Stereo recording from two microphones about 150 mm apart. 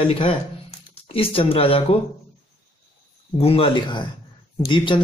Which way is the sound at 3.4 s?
40° left (ahead or behind).